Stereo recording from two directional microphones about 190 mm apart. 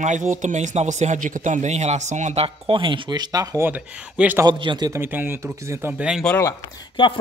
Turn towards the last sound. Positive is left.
turn(degrees=20)  # may be behind; listen again after turning